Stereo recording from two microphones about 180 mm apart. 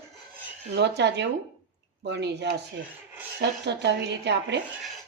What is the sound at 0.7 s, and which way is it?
A woman's voice, 70° right (ahead or behind).